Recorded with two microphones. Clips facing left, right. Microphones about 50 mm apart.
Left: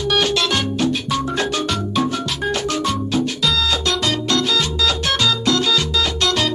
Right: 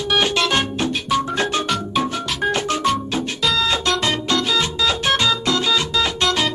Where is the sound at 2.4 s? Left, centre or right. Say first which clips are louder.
Right 2 dB; right.